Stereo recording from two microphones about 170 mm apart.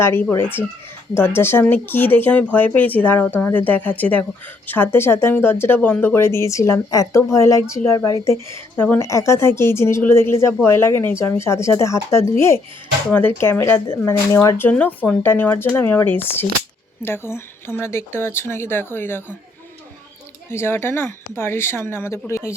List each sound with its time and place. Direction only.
0.0 s speech: 15° left (ahead or behind)
20.5 s speech: 15° left (ahead or behind)